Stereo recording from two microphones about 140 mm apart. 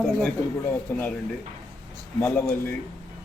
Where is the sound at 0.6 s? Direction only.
15° left (ahead or behind).